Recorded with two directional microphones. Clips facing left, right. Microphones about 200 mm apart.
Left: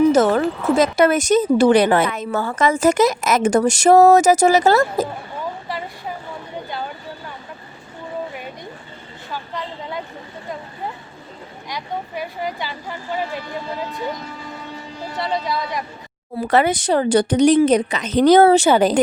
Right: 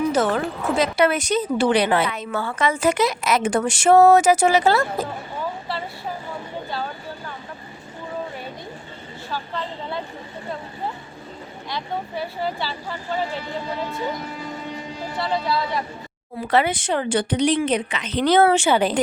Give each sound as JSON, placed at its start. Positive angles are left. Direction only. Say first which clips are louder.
{"t": 0.1, "sound": "speech", "louder": "left 6 dB", "side_deg": 45}
{"t": 11.7, "sound": "a woman's voice", "louder": "even", "side_deg": 15}
{"t": 15.2, "sound": "a woman's voice", "louder": "even", "side_deg": 20}
{"t": 16.5, "sound": "a woman's voice", "louder": "left 3 dB", "side_deg": 45}